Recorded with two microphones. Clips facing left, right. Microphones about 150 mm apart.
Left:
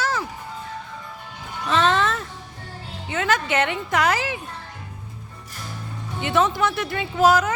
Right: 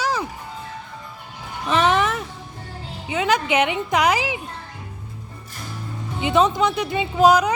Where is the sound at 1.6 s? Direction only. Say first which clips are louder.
Right 1 dB; 15° right (ahead or behind).